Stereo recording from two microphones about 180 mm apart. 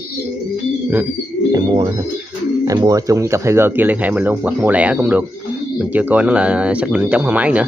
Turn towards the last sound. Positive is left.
turn(degrees=-5)  # may be behind; listen again after turning